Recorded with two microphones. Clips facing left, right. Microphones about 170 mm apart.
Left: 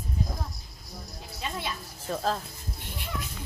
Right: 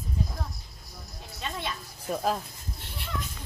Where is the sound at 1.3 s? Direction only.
5° left (ahead or behind).